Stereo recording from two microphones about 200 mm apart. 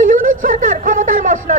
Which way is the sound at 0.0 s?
40° right (ahead or behind).